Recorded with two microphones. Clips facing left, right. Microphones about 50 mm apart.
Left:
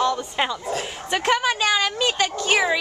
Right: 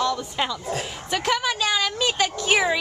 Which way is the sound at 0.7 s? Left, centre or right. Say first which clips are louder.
Left 2 dB; centre.